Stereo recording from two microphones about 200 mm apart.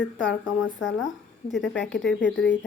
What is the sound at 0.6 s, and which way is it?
Speech, 70° left (ahead or behind).